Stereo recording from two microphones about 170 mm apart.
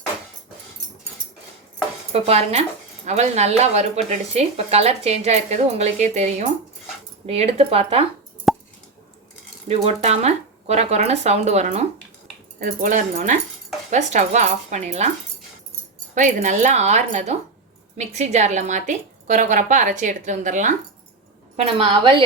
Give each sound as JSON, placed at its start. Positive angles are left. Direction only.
{"t": 2.1, "sound": "speech", "side_deg": -35}
{"t": 8.5, "sound": "plop", "side_deg": 0}
{"t": 9.6, "sound": "speech", "side_deg": -40}
{"t": 12.5, "sound": "a woman's voice", "side_deg": -55}
{"t": 16.1, "sound": "a woman's voice", "side_deg": -45}
{"t": 21.5, "sound": "speech", "side_deg": -35}